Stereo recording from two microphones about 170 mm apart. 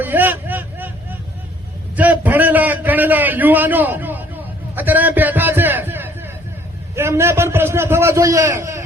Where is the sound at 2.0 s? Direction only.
10° right (ahead or behind).